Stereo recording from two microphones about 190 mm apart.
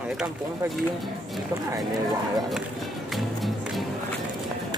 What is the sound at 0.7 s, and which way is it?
Speech, centre (ahead or behind).